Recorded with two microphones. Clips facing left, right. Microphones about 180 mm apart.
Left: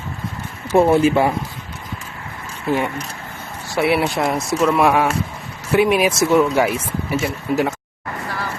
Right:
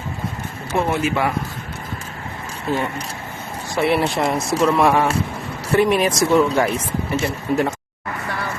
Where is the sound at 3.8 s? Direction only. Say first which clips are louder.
Even; 5° left (ahead or behind).